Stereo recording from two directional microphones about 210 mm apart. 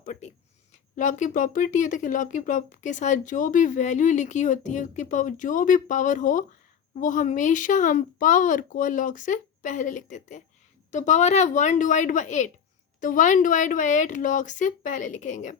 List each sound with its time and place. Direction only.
0.0 s speech: 35° left (ahead or behind)